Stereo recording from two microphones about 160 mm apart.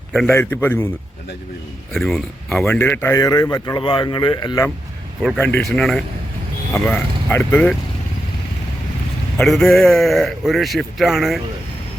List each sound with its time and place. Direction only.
0.3 s speech: 15° left (ahead or behind)
1.9 s speech: centre (ahead or behind); by 4.6 s 25° left (ahead or behind)
5.2 s a man's voice: 5° left (ahead or behind)
9.4 s a man's voice: centre (ahead or behind)